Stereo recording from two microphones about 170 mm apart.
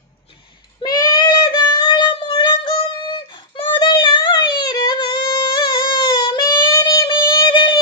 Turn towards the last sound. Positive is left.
turn(degrees=25)  # may be behind; listen again after turning